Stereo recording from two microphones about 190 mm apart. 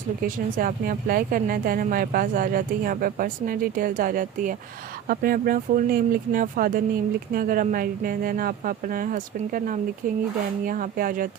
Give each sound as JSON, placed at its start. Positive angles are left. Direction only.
{"t": 0.2, "sound": "speech", "side_deg": -45}